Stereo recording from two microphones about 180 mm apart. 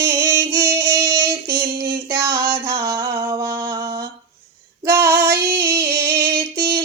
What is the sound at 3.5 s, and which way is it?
Mantra, 15° right (ahead or behind).